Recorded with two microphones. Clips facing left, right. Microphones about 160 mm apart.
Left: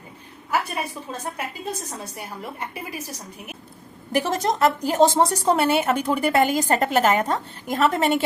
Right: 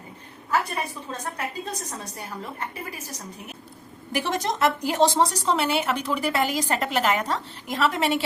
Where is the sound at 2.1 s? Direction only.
10° left (ahead or behind).